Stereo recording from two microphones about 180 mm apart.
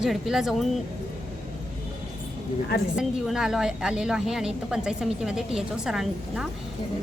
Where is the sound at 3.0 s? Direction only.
Centre (ahead or behind).